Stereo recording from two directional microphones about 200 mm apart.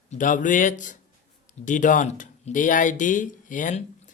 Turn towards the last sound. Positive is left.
turn(degrees=40)  # may be behind; listen again after turning